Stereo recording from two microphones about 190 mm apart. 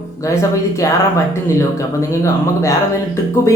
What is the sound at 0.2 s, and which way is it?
Speech, 15° left (ahead or behind).